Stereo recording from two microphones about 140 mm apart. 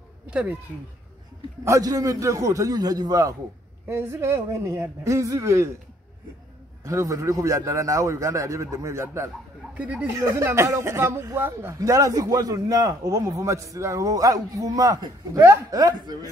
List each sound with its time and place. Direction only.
0.3 s speech: 10° right (ahead or behind)
1.6 s a man's voice: 25° right (ahead or behind)
6.8 s a man's voice: 20° right (ahead or behind)